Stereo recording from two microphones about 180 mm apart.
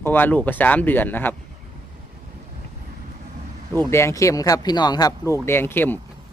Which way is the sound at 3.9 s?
15° left (ahead or behind).